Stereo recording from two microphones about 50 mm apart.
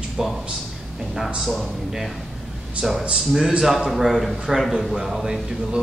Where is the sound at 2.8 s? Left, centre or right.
Centre.